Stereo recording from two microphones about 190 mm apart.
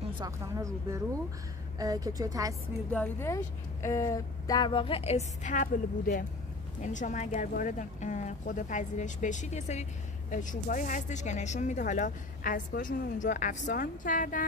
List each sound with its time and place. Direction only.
0.2 s a woman's voice: 15° right (ahead or behind)
2.9 s speech: 10° left (ahead or behind); by 14.4 s 45° left (ahead or behind)